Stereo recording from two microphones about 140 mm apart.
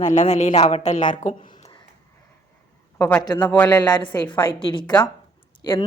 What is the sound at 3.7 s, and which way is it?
A woman's voice, 30° left (ahead or behind).